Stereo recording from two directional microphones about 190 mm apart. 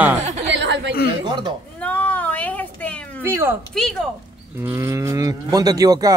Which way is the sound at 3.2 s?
15° right (ahead or behind).